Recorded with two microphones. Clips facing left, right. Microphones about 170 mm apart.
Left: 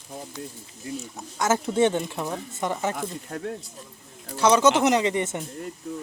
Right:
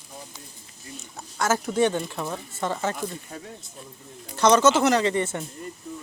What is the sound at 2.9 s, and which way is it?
Speech, 70° left (ahead or behind).